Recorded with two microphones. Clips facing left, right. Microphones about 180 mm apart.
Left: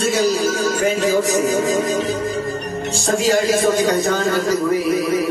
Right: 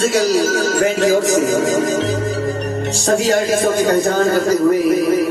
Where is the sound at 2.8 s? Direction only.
60° right (ahead or behind).